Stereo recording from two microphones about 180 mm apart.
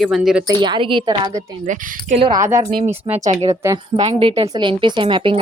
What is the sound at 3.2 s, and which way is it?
Speech, 35° right (ahead or behind).